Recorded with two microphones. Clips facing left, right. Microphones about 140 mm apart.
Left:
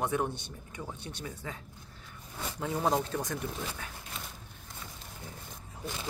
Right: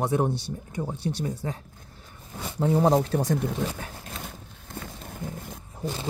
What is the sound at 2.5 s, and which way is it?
Speech, 35° right (ahead or behind).